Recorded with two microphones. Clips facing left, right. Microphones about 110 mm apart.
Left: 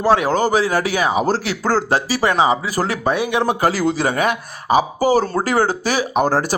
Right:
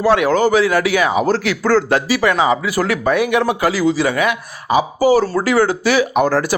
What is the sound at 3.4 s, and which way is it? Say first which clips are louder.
Speech: right 1 dB; 40° left (ahead or behind).